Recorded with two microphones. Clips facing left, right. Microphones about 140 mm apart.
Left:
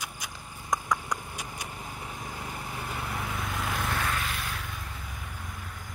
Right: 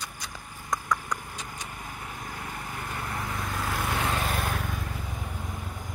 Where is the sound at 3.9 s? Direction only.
25° right (ahead or behind).